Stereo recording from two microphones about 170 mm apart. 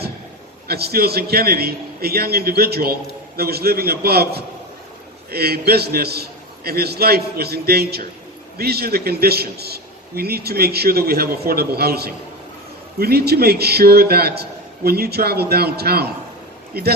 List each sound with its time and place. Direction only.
0.7 s a man's voice: 65° right (ahead or behind)